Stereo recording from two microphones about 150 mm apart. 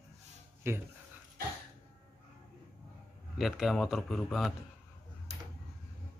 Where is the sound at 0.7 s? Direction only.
15° right (ahead or behind).